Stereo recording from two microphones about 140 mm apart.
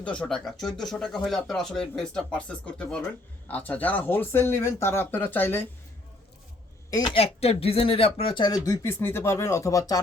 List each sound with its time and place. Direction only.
0.0 s speech: 10° left (ahead or behind)
6.9 s speech: 35° left (ahead or behind)